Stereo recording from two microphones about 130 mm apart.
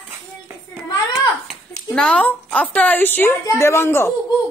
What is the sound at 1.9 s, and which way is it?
A woman's voice, 10° left (ahead or behind).